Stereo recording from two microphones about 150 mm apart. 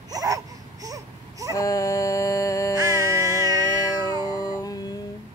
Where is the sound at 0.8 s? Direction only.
25° right (ahead or behind).